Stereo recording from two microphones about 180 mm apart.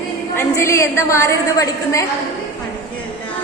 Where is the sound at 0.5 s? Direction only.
15° left (ahead or behind).